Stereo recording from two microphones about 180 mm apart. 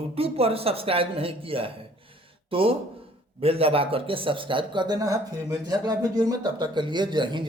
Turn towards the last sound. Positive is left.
turn(degrees=-25)  # may be behind; listen again after turning